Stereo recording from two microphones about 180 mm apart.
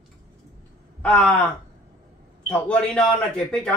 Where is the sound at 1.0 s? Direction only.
10° left (ahead or behind).